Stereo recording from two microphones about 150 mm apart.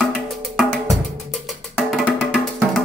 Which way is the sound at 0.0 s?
Centre (ahead or behind).